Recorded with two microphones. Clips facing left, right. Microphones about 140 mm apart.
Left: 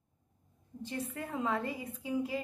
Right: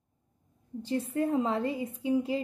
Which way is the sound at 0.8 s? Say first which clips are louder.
Right 10 dB; 30° right (ahead or behind).